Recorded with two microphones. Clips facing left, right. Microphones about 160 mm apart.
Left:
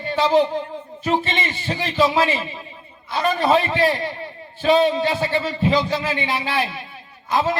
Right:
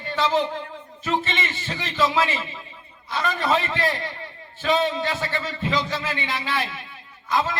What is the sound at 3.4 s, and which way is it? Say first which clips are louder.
A man's voice: left 6 dB; 15° left (ahead or behind).